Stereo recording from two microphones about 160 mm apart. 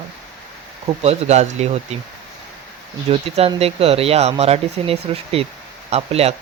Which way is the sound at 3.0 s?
40° right (ahead or behind).